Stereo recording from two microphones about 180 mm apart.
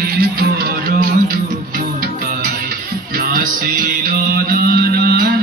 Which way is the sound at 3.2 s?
55° right (ahead or behind).